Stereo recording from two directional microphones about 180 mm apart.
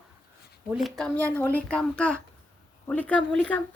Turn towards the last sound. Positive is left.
turn(degrees=5)  # may be behind; listen again after turning